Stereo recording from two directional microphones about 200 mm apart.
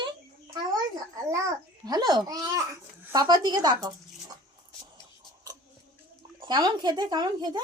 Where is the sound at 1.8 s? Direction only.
20° right (ahead or behind).